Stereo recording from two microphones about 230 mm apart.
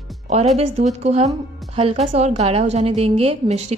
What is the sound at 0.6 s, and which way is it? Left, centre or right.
A woman's voice, right.